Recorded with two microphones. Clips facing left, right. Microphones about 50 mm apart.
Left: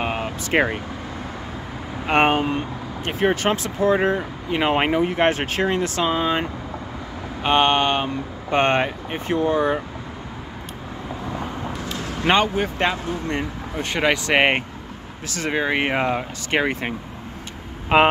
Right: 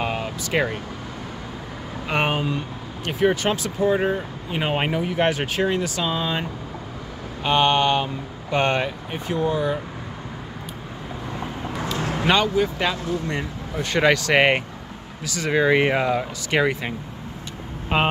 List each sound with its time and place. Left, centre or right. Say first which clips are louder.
0.0 s vehicle: left 1 dB; left
2.0 s speech: left 5 dB; left
4.7 s speech: left 1 dB; left
6.1 s speech: left 4 dB; left
7.4 s speech: left 1 dB; left
12.3 s speech: left 1 dB; left
13.9 s speech: right 2 dB; centre
14.2 s speech: even; left
15.2 s speech: even; left
15.5 s speech: right 4 dB; left
17.9 s speech: left 6 dB; left